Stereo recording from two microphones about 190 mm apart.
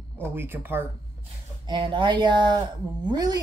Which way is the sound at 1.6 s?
25° right (ahead or behind).